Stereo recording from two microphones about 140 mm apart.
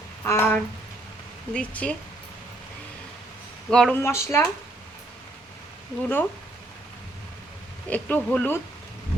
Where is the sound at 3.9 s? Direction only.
20° left (ahead or behind).